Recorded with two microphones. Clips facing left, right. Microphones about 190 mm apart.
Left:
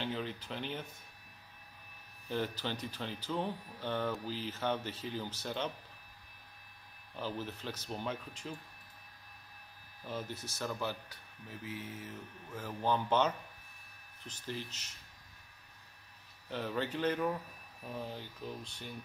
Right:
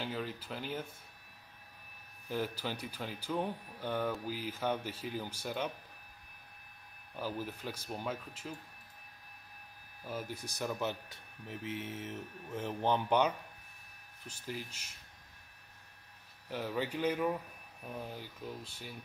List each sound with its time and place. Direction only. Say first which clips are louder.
0.0 s speech: left 1 dB; 5° right (ahead or behind)
2.2 s speech: even; 10° right (ahead or behind)
7.2 s speech: right 1 dB; 10° right (ahead or behind)
10.0 s speech: even; 10° right (ahead or behind)
16.4 s speech: even; 10° right (ahead or behind)